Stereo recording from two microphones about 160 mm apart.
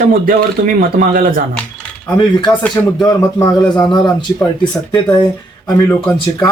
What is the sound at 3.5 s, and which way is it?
Speech, 5° left (ahead or behind).